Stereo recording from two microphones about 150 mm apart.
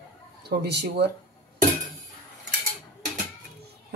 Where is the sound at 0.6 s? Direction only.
90° right.